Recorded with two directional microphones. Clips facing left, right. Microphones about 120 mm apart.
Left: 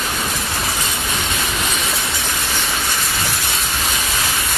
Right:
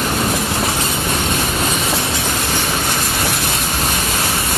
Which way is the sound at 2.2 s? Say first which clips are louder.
Right 4 dB; 55° right (ahead or behind).